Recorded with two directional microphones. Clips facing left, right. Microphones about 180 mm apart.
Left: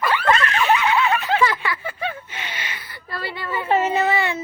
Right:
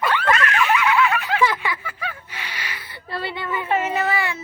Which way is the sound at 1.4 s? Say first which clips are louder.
Even; 15° right (ahead or behind).